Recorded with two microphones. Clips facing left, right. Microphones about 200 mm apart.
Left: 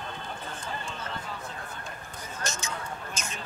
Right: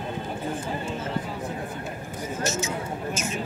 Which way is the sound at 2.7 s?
20° right (ahead or behind).